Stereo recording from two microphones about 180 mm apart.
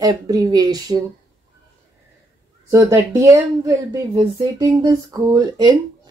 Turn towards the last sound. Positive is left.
turn(degrees=-20)  # may be behind; listen again after turning